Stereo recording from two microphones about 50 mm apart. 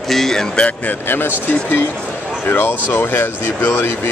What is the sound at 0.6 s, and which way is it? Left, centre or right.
Speech, left.